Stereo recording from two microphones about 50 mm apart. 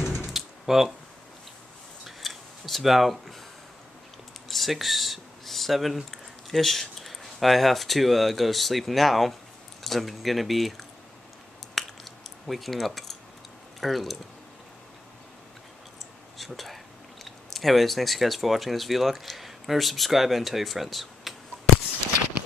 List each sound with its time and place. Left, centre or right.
0.0 s computer keyboard: left
0.3 s computer keyboard: centre
2.0 s scissors: centre
4.5 s typing: centre
6.5 s speech: centre
11.7 s keys jangling: centre
13.7 s speech: centre
16.3 s speech: centre